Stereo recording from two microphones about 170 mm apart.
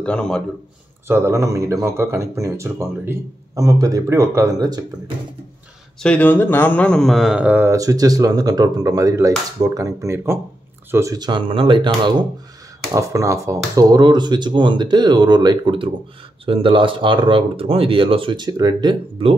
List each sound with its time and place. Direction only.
0.0 s speech: 5° left (ahead or behind)
1.0 s speech: 15° right (ahead or behind)
6.0 s speech: 10° left (ahead or behind); by 19.3 s 30° right (ahead or behind)